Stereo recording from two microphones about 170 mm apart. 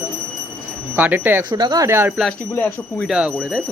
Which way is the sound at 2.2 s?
5° left (ahead or behind).